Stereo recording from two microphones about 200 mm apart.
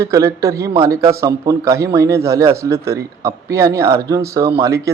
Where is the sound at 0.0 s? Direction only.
15° right (ahead or behind).